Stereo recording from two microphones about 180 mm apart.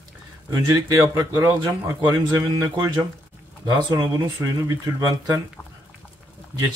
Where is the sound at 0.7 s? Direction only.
20° right (ahead or behind).